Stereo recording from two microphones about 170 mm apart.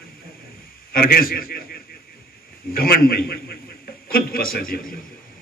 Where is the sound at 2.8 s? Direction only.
60° left (ahead or behind).